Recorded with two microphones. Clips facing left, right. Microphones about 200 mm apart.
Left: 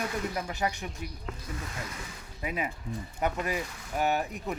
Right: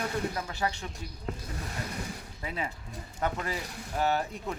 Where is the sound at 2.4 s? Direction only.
15° left (ahead or behind).